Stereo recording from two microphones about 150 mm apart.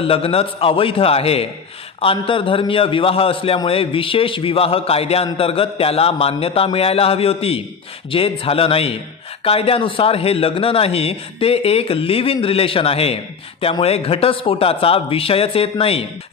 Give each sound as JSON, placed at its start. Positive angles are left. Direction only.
{"t": 0.0, "sound": "a man's voice", "side_deg": 40}